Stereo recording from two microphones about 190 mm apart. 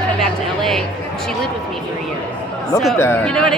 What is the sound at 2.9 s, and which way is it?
Speech, 10° left (ahead or behind).